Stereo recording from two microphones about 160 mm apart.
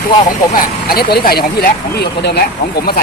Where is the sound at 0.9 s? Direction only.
75° left (ahead or behind).